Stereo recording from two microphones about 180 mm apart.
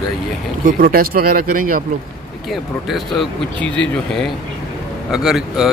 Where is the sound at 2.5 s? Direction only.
Centre (ahead or behind).